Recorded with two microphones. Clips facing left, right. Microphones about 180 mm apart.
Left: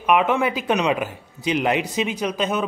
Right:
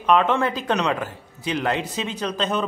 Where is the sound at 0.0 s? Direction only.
10° left (ahead or behind).